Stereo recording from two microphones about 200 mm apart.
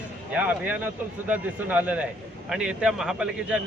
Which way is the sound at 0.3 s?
5° right (ahead or behind).